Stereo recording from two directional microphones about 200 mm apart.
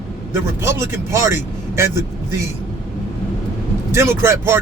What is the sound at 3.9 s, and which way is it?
Speech, 15° right (ahead or behind).